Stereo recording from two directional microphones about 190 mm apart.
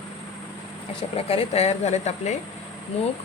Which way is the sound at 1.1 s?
30° left (ahead or behind).